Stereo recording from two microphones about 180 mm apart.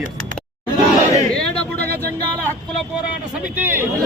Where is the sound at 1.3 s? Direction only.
5° left (ahead or behind).